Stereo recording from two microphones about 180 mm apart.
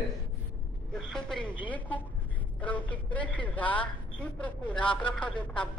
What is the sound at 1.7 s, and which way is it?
A woman's voice, 10° left (ahead or behind).